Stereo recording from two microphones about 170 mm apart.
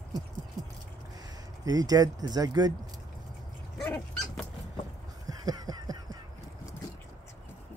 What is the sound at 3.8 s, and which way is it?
Dog, 5° left (ahead or behind).